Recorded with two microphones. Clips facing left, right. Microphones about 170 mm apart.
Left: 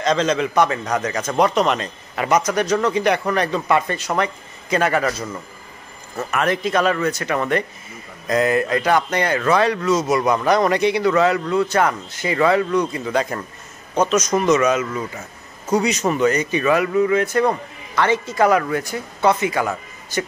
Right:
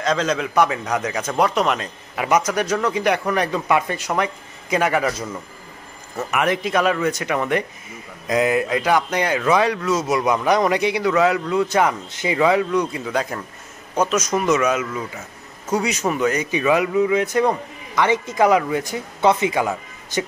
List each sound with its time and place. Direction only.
0.0 s a man's voice: 5° right (ahead or behind)